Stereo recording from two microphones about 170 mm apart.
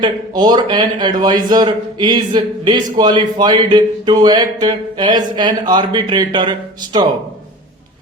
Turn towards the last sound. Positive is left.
turn(degrees=-25)  # may be behind; listen again after turning